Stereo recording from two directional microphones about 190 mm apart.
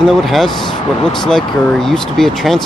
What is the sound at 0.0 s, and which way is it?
Speech, centre (ahead or behind).